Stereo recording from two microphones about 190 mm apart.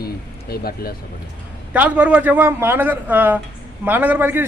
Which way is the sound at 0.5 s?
55° left (ahead or behind).